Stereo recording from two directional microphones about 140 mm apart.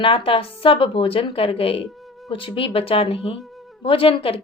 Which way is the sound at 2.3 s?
40° left (ahead or behind).